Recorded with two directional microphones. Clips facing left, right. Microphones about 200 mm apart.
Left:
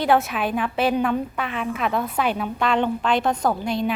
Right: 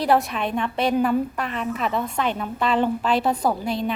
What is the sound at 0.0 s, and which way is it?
A woman's voice, centre (ahead or behind).